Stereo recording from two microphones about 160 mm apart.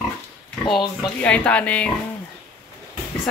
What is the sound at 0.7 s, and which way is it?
Speech, 5° left (ahead or behind).